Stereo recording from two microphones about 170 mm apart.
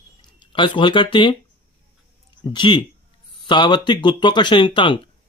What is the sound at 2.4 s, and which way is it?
Speech, 25° left (ahead or behind).